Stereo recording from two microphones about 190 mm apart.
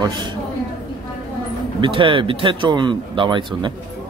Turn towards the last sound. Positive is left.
turn(degrees=-25)  # may be behind; listen again after turning